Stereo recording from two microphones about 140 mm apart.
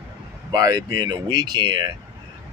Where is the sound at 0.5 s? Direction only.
30° right (ahead or behind).